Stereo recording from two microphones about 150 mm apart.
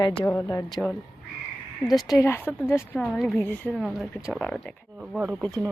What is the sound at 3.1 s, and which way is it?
Speech, centre (ahead or behind).